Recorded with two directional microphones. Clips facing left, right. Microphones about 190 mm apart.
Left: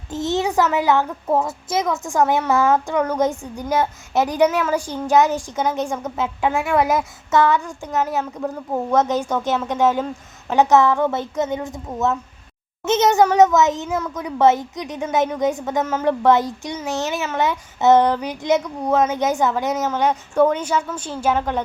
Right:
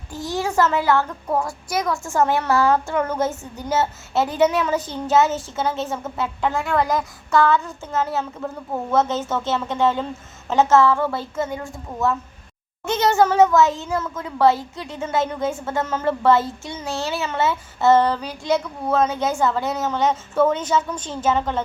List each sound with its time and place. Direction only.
0.1 s a child's voice: 20° left (ahead or behind)